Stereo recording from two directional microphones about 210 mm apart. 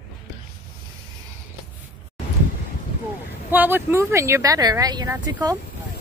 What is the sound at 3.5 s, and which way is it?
Speech, 10° right (ahead or behind).